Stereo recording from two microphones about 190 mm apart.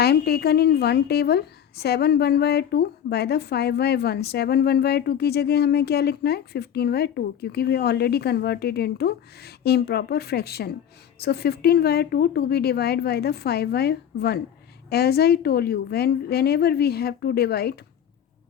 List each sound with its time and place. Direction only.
0.0 s a woman's voice: 55° left (ahead or behind)